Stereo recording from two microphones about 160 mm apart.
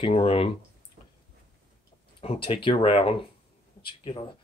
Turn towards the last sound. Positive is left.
turn(degrees=30)  # may be behind; listen again after turning